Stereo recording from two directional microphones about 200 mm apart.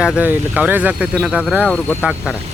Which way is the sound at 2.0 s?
5° right (ahead or behind).